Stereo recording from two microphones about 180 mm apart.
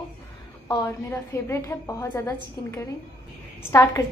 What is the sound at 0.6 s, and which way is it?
A woman's voice, 15° left (ahead or behind).